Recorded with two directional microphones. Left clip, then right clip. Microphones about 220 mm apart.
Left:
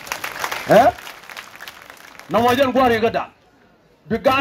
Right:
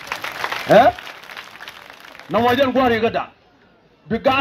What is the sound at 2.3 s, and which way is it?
Speech, 20° left (ahead or behind).